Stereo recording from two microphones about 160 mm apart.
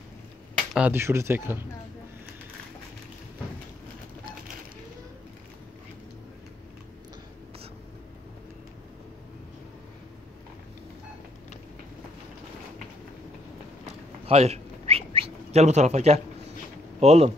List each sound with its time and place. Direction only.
0.7 s speech: 10° right (ahead or behind)
14.2 s whistling: 40° right (ahead or behind)
17.0 s speech: 40° right (ahead or behind)